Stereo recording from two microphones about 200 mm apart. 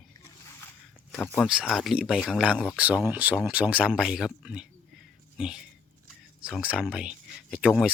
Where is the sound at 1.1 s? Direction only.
5° left (ahead or behind).